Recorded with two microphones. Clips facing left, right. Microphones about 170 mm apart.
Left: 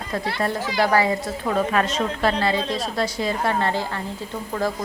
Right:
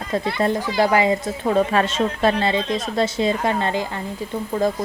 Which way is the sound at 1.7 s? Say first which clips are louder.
Right 2 dB; 30° right (ahead or behind).